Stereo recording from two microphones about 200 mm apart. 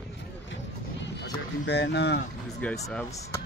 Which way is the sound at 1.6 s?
60° left (ahead or behind).